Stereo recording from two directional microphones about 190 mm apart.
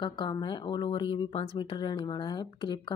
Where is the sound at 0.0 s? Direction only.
25° left (ahead or behind).